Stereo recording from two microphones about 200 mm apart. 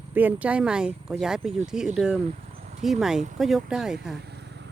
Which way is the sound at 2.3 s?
35° right (ahead or behind).